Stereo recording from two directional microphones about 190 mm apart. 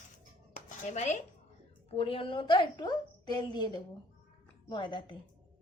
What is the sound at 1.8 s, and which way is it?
A woman's voice, 30° left (ahead or behind).